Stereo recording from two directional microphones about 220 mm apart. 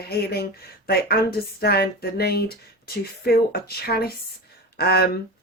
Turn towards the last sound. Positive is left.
turn(degrees=45)  # may be behind; listen again after turning